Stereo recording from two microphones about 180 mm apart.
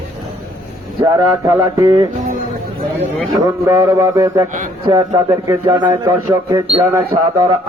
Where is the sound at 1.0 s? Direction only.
20° right (ahead or behind).